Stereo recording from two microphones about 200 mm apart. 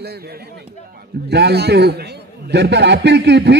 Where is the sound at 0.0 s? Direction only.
50° right (ahead or behind).